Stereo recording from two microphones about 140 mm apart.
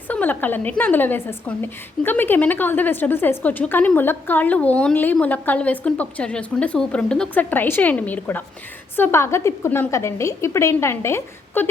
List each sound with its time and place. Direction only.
0.1 s a woman's voice: 10° left (ahead or behind)